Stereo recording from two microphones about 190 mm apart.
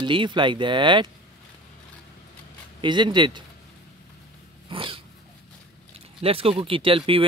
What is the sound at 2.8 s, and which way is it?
Speech, 25° right (ahead or behind).